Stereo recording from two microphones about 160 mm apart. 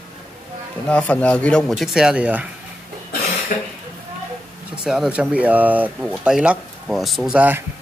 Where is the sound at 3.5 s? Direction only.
55° left (ahead or behind).